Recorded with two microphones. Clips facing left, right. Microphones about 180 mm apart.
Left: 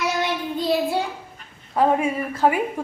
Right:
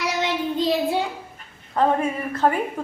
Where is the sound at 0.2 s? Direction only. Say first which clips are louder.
Right 2 dB; 20° right (ahead or behind).